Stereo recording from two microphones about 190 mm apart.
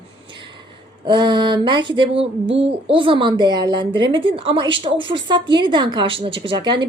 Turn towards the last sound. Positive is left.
turn(degrees=-25)  # may be behind; listen again after turning